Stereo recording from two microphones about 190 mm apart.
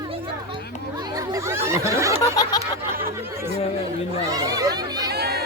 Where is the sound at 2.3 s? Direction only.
20° left (ahead or behind).